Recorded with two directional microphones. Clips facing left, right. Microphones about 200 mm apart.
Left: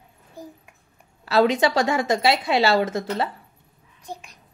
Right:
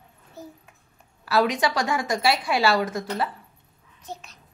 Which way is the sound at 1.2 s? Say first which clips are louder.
Left 4 dB; 25° left (ahead or behind).